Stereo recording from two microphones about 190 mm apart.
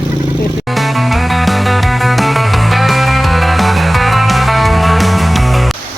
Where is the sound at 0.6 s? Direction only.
Centre (ahead or behind).